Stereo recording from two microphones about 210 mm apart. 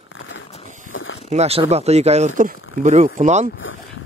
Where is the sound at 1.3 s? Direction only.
30° right (ahead or behind).